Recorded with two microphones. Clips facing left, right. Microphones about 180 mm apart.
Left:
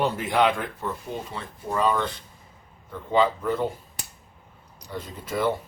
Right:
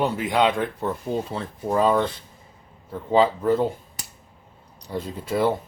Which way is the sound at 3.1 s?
30° right (ahead or behind).